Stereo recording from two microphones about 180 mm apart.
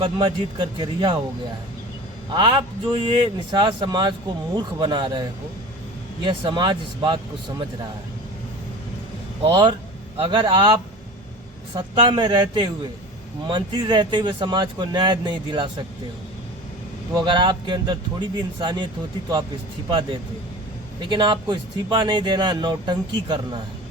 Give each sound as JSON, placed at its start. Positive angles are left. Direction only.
{"t": 0.0, "sound": "speech", "side_deg": -25}
{"t": 2.3, "sound": "speech", "side_deg": -25}
{"t": 6.2, "sound": "speech", "side_deg": -25}
{"t": 9.4, "sound": "speech", "side_deg": -25}
{"t": 17.2, "sound": "speech", "side_deg": -25}
{"t": 21.0, "sound": "speech", "side_deg": -25}